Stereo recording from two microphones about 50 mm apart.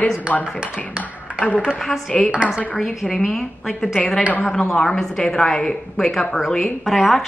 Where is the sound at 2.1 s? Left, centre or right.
Centre.